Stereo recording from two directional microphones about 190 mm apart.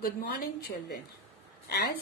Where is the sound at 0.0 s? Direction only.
50° left (ahead or behind).